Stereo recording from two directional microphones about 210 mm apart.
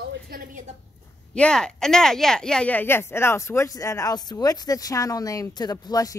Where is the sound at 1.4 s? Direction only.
5° left (ahead or behind).